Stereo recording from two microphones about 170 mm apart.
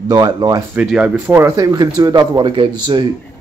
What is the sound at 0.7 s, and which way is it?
Speech, 10° right (ahead or behind).